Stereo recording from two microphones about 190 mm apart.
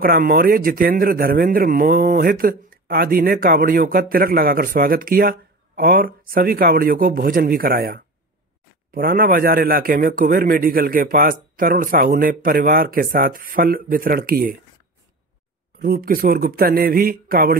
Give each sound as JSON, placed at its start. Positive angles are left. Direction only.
{"t": 0.0, "sound": "a man's voice", "side_deg": -50}
{"t": 15.8, "sound": "a man's voice", "side_deg": -50}